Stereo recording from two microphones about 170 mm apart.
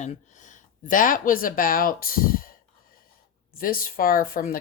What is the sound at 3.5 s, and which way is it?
Speech, 60° left (ahead or behind).